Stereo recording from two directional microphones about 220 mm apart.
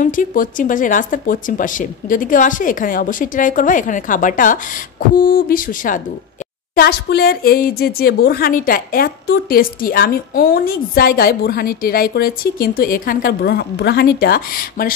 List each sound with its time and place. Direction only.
0.0 s speech: 35° left (ahead or behind)